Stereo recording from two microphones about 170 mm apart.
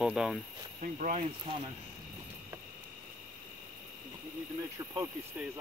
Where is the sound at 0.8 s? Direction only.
50° right (ahead or behind).